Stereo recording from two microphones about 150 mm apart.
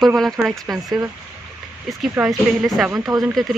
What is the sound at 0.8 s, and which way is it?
Speech, 15° right (ahead or behind).